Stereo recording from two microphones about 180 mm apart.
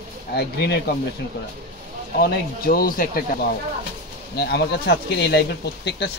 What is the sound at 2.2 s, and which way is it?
Speech, 55° left (ahead or behind).